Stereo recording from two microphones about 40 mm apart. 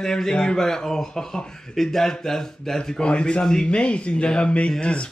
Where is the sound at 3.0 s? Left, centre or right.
Left.